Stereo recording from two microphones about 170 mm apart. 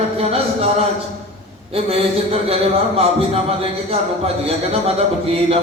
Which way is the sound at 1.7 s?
35° right (ahead or behind).